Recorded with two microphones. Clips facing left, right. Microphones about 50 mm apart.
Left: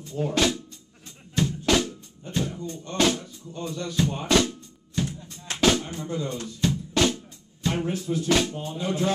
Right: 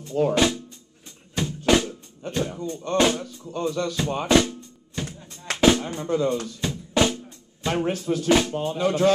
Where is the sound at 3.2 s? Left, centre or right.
Right.